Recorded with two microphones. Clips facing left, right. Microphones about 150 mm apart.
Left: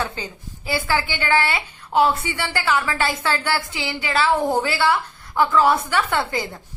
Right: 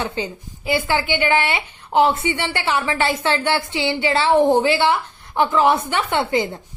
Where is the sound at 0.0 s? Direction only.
20° right (ahead or behind).